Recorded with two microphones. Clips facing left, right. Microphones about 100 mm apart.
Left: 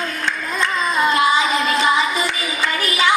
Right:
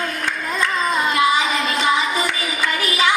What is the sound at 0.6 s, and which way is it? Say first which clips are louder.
Child singing: left 1 dB; 25° left (ahead or behind).